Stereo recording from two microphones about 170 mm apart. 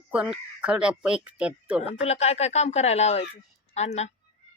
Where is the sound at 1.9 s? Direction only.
40° left (ahead or behind).